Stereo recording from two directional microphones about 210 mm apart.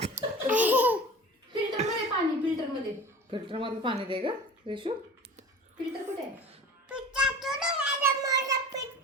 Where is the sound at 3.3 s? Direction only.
25° right (ahead or behind).